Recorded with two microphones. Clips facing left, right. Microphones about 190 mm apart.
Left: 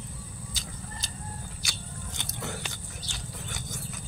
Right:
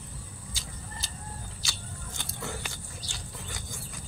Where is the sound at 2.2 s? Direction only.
20° left (ahead or behind).